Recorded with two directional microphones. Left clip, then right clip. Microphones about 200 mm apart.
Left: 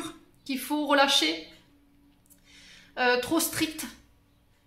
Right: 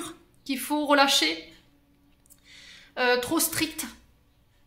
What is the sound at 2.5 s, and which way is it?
Speech, 15° right (ahead or behind).